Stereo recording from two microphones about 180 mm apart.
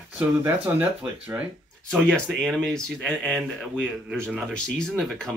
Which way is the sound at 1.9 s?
5° left (ahead or behind).